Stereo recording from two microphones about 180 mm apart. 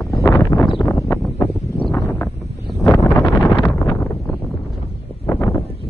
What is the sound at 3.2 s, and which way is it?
Wind noise, 20° left (ahead or behind).